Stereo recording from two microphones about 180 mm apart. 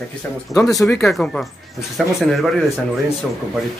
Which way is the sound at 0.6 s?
20° left (ahead or behind).